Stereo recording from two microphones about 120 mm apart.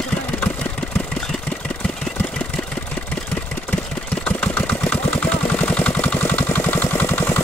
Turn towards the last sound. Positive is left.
turn(degrees=15)  # may be behind; listen again after turning